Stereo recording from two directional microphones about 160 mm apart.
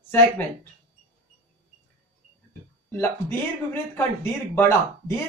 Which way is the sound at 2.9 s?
15° left (ahead or behind).